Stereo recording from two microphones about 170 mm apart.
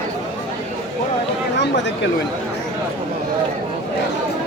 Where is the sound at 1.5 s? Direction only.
90° left.